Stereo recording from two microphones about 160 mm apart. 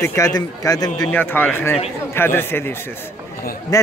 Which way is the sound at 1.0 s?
10° left (ahead or behind).